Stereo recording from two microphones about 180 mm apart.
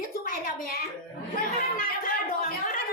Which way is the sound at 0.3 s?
50° left (ahead or behind).